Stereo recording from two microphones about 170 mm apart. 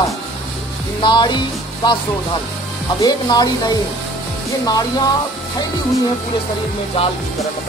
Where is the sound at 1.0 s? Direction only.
25° left (ahead or behind).